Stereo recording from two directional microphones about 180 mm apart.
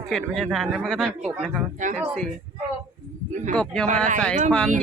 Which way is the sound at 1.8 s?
45° right (ahead or behind).